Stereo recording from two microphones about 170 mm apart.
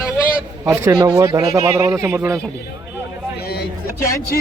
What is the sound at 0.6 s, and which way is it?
A man's voice, 15° right (ahead or behind).